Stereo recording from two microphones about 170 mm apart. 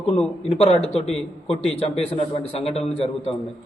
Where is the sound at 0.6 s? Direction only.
40° left (ahead or behind).